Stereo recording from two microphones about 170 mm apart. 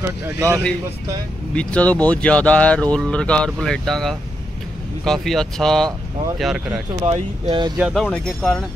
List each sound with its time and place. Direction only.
0.0 s speech: 15° right (ahead or behind)
1.5 s speech: 5° left (ahead or behind)
7.1 s speech: 30° right (ahead or behind)
7.8 s speech: centre (ahead or behind)